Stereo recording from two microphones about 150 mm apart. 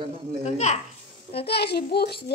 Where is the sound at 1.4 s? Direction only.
90° left.